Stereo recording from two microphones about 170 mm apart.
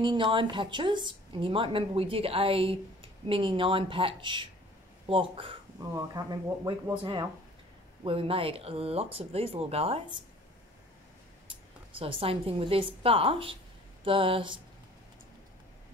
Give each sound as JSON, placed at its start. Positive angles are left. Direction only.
{"t": 0.0, "sound": "speech", "side_deg": -30}
{"t": 5.9, "sound": "speech", "side_deg": -20}
{"t": 8.0, "sound": "speech", "side_deg": -30}
{"t": 12.0, "sound": "speech", "side_deg": -35}